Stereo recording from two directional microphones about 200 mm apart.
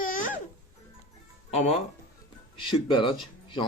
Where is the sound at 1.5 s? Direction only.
30° left (ahead or behind).